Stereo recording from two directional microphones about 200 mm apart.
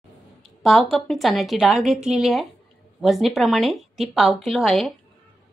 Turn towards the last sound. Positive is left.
turn(degrees=0)  # may be behind; listen again after turning